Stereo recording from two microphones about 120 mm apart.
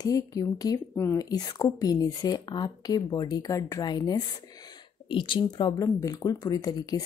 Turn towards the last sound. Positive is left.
turn(degrees=35)  # may be behind; listen again after turning